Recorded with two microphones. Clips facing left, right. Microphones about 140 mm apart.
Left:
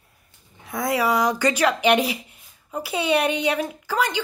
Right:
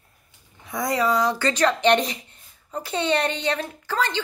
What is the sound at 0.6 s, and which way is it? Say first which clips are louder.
Speech: left 1 dB; centre (ahead or behind).